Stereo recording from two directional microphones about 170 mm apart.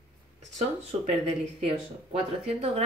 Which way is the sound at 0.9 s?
40° right (ahead or behind).